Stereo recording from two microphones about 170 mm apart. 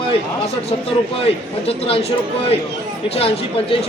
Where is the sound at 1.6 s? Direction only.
35° left (ahead or behind).